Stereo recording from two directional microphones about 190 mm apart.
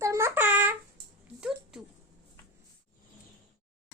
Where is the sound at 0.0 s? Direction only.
15° right (ahead or behind).